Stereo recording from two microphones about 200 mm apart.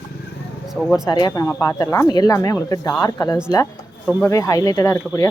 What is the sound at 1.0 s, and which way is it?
Speech, 20° left (ahead or behind).